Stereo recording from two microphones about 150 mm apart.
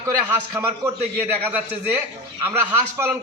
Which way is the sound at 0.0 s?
20° right (ahead or behind).